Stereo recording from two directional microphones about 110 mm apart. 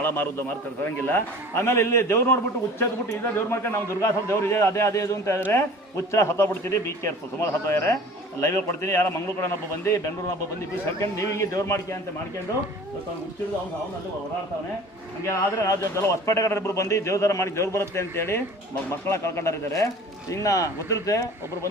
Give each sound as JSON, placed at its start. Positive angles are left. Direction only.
{"t": 0.0, "sound": "a man's voice", "side_deg": 15}
{"t": 8.4, "sound": "a man's voice", "side_deg": 25}
{"t": 15.3, "sound": "a man's voice", "side_deg": 30}